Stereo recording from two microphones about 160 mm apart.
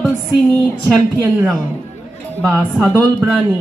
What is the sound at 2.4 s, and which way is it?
Speech, centre (ahead or behind).